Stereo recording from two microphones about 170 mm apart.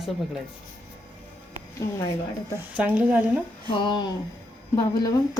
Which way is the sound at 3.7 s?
25° left (ahead or behind).